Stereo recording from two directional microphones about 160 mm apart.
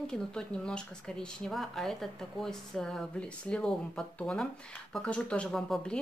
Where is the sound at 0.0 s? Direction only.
5° left (ahead or behind).